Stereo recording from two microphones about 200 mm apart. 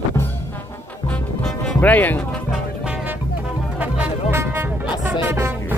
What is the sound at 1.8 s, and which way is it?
Speech, 10° left (ahead or behind).